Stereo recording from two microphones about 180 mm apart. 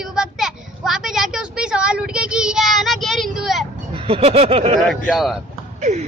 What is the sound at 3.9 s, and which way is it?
Speech, 30° right (ahead or behind).